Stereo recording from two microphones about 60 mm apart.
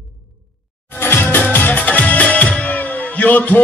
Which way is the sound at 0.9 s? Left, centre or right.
Left.